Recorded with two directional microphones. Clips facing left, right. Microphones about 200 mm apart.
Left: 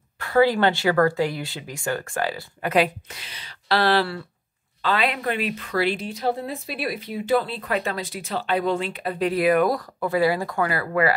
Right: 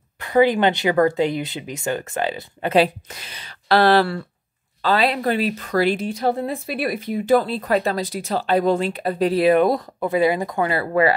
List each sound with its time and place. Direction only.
0.2 s speech: 20° right (ahead or behind)
3.1 s speech: 45° right (ahead or behind)
4.8 s a woman's voice: 35° right (ahead or behind)